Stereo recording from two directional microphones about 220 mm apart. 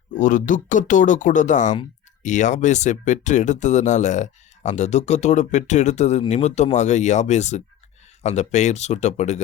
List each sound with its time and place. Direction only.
0.1 s speech: 35° left (ahead or behind)